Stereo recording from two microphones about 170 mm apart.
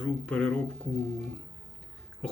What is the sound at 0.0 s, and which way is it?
Speech, 5° left (ahead or behind).